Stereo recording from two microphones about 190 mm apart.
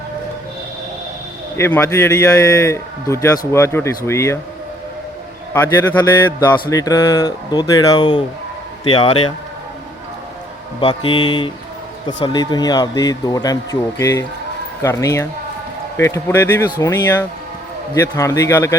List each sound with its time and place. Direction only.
1.5 s a man's voice: 15° left (ahead or behind)
5.5 s a man's voice: 10° left (ahead or behind); by 9.3 s 30° left (ahead or behind)
10.8 s a man's voice: 25° left (ahead or behind)